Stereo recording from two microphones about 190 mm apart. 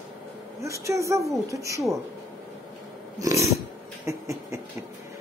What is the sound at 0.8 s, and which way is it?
Speech, 15° right (ahead or behind).